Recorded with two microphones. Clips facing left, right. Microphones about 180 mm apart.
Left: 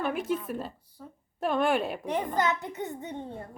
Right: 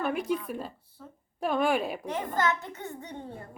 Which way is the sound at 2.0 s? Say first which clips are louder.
Left 2 dB; 15° left (ahead or behind).